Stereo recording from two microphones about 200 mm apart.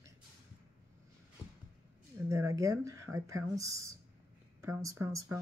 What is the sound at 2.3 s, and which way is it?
Speech, 15° right (ahead or behind).